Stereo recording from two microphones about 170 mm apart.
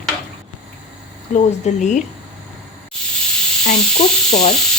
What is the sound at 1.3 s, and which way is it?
Speech, 40° left (ahead or behind).